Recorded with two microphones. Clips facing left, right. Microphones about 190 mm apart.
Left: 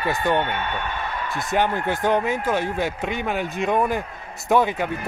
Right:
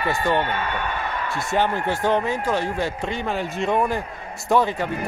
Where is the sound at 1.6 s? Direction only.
20° left (ahead or behind).